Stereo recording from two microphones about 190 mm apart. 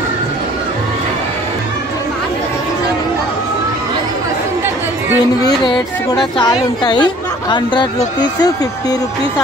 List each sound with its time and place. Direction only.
6.3 s speech: 25° left (ahead or behind)